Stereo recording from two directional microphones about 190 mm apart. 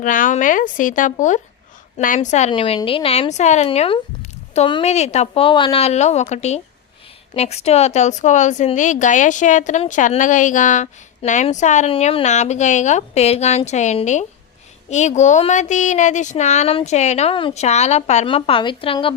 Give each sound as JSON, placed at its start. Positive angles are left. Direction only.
{"t": 0.0, "sound": "a woman's voice", "side_deg": 45}
{"t": 2.5, "sound": "a woman's voice", "side_deg": 30}